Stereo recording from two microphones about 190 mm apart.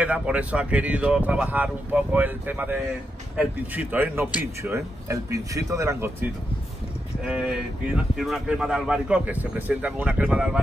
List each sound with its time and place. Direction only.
0.0 s speech: 5° right (ahead or behind)